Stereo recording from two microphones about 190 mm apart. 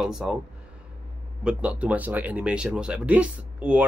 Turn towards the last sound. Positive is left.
turn(degrees=-5)  # may be behind; listen again after turning